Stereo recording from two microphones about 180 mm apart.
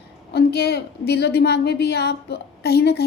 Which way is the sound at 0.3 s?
65° left (ahead or behind).